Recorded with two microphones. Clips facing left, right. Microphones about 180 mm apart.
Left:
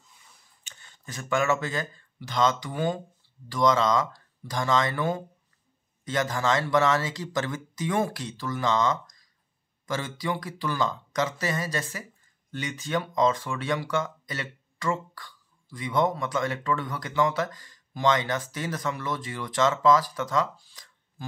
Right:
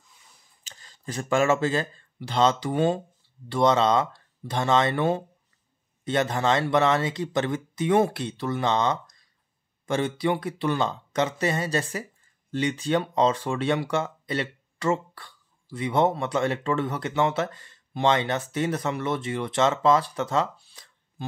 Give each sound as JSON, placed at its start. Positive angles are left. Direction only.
{"t": 0.7, "sound": "speech", "side_deg": -35}